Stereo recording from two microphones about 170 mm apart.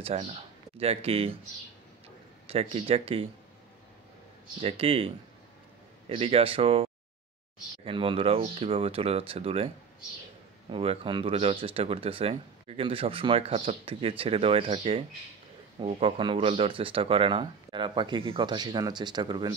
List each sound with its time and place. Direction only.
0.0 s speech: 35° right (ahead or behind)
2.4 s speech: 35° right (ahead or behind)
4.6 s speech: 35° right (ahead or behind)
10.7 s speech: 35° right (ahead or behind)